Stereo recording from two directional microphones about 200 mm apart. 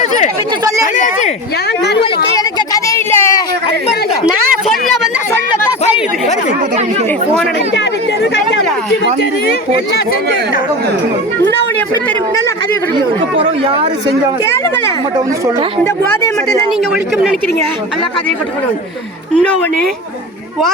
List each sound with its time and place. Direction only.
2.6 s a sound: 15° left (ahead or behind)
13.3 s chatter: 30° right (ahead or behind)
15.8 s speech: 15° left (ahead or behind)